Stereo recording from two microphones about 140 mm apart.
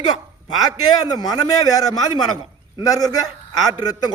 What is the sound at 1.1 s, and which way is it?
A man's voice, 30° left (ahead or behind).